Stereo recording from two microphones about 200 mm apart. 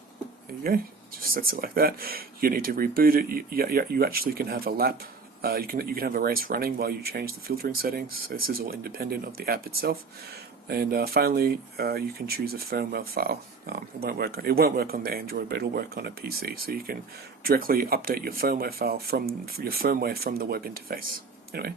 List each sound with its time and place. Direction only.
0.6 s speech: 45° right (ahead or behind)